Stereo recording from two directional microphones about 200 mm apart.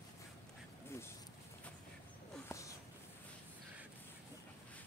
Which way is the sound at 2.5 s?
15° left (ahead or behind).